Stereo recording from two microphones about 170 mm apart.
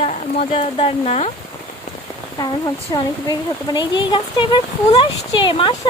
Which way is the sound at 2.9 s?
25° left (ahead or behind).